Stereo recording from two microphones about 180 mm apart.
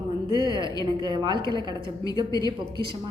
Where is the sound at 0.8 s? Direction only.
25° right (ahead or behind).